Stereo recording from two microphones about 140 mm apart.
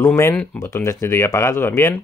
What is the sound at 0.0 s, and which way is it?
Speech, 15° left (ahead or behind).